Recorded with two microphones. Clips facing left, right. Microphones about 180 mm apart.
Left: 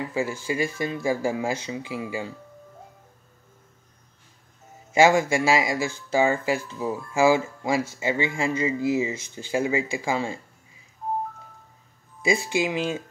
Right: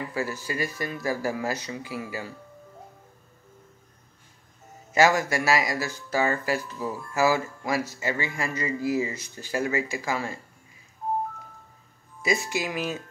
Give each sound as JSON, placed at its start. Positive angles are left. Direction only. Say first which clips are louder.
{"t": 0.1, "sound": "speech", "louder": "left 3 dB", "side_deg": 25}
{"t": 4.9, "sound": "speech", "louder": "left 3 dB", "side_deg": 25}
{"t": 12.2, "sound": "speech", "louder": "left 4 dB", "side_deg": 25}